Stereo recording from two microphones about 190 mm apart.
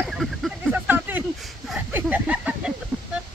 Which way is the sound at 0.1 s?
Centre (ahead or behind).